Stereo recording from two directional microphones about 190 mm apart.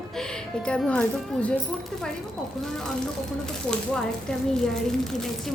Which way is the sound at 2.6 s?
Centre (ahead or behind).